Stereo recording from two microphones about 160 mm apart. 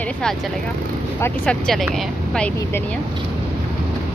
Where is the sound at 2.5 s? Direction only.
15° left (ahead or behind).